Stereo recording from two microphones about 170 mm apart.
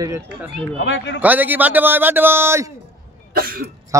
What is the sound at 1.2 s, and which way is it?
A man's voice, 10° right (ahead or behind).